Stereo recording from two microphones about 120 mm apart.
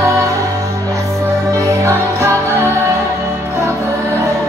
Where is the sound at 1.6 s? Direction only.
25° right (ahead or behind).